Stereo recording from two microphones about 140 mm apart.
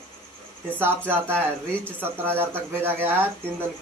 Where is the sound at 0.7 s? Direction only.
15° right (ahead or behind).